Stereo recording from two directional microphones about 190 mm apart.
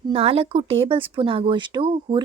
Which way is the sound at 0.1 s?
30° right (ahead or behind).